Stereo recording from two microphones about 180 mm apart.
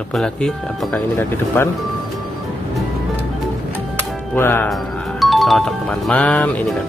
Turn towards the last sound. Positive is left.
turn(degrees=5)  # may be behind; listen again after turning